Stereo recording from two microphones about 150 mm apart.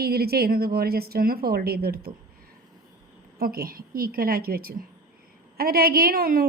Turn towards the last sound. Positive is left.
turn(degrees=-85)